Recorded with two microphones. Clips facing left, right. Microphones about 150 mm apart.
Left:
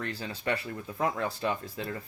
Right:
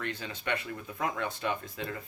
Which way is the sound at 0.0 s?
35° left (ahead or behind).